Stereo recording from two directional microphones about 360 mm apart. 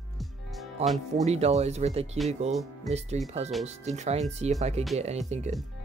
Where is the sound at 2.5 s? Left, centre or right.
Centre.